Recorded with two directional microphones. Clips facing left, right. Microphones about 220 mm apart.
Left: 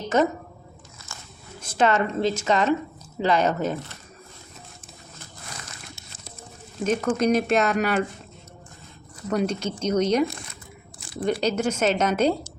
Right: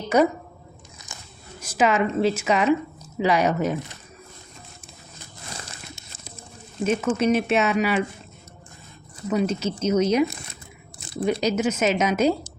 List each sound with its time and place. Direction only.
1.1 s a sound: 15° right (ahead or behind)
1.6 s speech: 5° right (ahead or behind)
6.8 s speech: 5° right (ahead or behind)
9.3 s speech: 5° right (ahead or behind)